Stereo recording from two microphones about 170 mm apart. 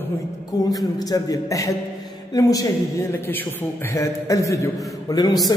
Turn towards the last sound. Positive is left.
turn(degrees=25)  # may be behind; listen again after turning